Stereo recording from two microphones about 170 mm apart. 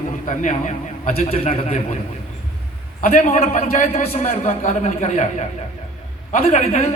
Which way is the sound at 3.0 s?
45° left (ahead or behind).